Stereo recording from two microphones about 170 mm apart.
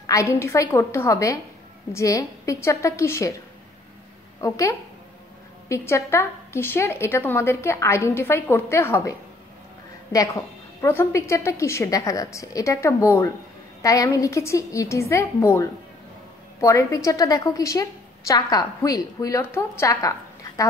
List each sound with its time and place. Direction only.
0.0 s a woman's voice: 20° left (ahead or behind)
4.4 s a woman's voice: 20° left (ahead or behind)
10.1 s a woman's voice: 20° left (ahead or behind)